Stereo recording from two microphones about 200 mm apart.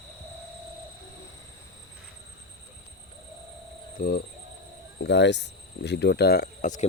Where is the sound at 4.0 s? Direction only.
50° left (ahead or behind).